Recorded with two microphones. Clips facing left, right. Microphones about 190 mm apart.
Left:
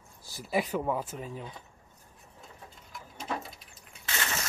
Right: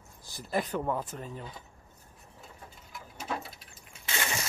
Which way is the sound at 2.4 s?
5° right (ahead or behind).